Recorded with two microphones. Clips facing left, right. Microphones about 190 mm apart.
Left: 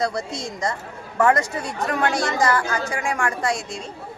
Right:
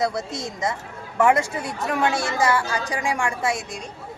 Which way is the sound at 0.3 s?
20° right (ahead or behind).